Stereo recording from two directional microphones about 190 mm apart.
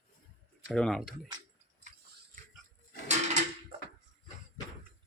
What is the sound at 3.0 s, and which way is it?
Drawer open or close, 35° right (ahead or behind).